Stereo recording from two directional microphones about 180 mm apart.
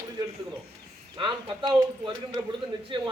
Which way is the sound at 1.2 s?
25° right (ahead or behind).